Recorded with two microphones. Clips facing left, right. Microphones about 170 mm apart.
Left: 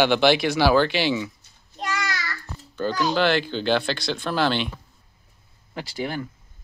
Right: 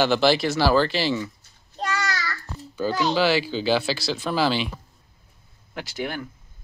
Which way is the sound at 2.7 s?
10° right (ahead or behind).